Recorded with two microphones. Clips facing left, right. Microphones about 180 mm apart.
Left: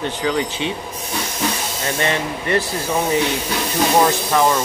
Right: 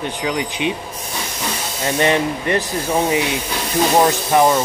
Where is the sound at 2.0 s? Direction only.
15° right (ahead or behind).